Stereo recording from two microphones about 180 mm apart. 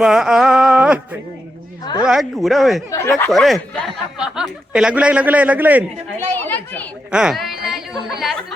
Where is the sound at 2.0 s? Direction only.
Centre (ahead or behind).